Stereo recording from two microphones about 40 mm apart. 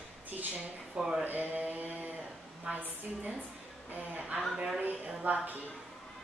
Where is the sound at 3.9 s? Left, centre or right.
Right.